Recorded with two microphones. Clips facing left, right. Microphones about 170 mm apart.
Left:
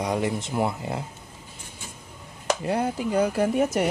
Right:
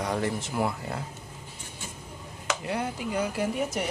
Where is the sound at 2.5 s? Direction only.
35° left (ahead or behind).